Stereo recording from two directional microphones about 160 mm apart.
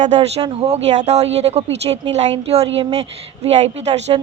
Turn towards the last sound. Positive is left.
turn(degrees=-40)  # may be behind; listen again after turning